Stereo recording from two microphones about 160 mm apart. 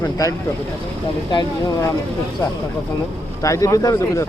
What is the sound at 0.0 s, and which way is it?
Speech, 20° left (ahead or behind).